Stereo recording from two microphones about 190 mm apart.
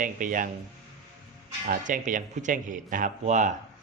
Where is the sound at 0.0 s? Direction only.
45° right (ahead or behind).